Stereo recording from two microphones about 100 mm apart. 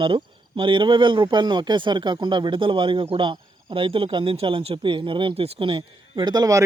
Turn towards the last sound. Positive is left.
turn(degrees=-40)  # may be behind; listen again after turning